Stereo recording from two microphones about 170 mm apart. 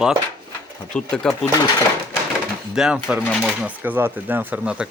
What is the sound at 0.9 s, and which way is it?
Speech, 5° left (ahead or behind).